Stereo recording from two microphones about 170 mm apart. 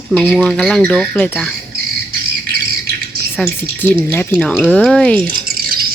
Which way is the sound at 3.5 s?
10° left (ahead or behind).